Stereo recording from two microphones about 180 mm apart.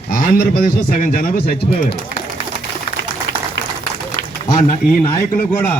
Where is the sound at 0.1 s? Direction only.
55° left (ahead or behind).